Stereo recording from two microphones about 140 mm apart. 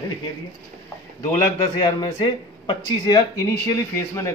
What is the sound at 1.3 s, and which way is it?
Speech, 30° left (ahead or behind).